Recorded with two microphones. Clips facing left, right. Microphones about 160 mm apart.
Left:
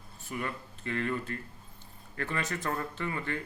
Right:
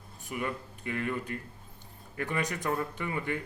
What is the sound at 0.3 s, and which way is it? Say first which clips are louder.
A man's voice: right 2 dB; 15° right (ahead or behind).